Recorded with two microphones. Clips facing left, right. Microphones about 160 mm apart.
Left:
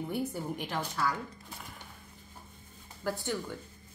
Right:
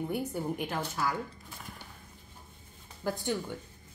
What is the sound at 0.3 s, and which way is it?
Speech, centre (ahead or behind).